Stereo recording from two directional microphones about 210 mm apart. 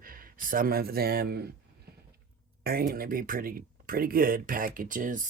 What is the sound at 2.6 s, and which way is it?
Speech, 45° right (ahead or behind).